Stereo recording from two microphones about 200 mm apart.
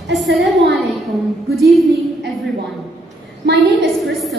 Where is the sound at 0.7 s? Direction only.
Centre (ahead or behind).